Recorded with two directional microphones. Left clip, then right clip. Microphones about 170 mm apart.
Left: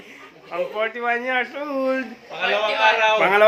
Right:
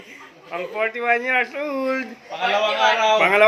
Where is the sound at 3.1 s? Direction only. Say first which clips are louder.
Right 1 dB; centre (ahead or behind).